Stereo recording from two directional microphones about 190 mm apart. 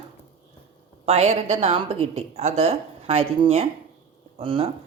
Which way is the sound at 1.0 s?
35° right (ahead or behind).